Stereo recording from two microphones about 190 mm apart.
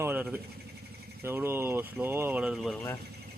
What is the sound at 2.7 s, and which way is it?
Speech, 15° left (ahead or behind).